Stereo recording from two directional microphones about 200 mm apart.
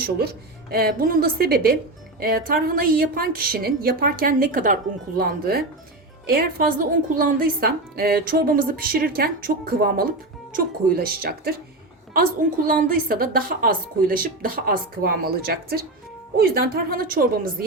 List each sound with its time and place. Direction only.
0.0 s a woman's voice: 50° right (ahead or behind)